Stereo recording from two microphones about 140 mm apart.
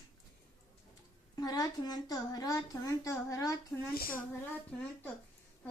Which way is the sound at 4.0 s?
90° left.